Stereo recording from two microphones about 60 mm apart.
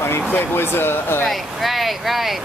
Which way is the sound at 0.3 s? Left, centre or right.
Left.